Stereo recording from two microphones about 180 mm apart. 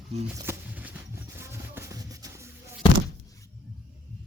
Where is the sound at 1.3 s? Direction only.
15° right (ahead or behind).